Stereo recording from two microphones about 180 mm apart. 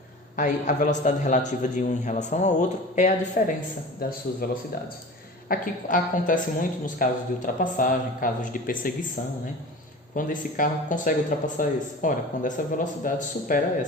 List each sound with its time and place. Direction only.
0.3 s a woman's voice: 45° left (ahead or behind)
4.0 s speech: 55° left (ahead or behind)
5.5 s a woman's voice: 50° left (ahead or behind)
10.2 s a woman's voice: 50° left (ahead or behind)